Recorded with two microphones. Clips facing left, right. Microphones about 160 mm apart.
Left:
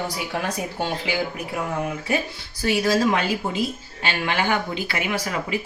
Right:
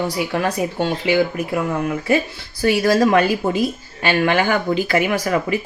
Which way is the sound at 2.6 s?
60° right (ahead or behind).